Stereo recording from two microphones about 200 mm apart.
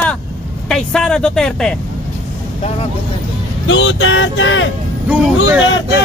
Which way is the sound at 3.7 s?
70° left (ahead or behind).